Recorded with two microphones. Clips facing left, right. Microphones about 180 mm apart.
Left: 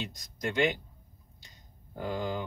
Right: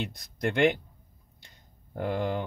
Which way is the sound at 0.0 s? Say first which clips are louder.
Right 5 dB; 60° right (ahead or behind).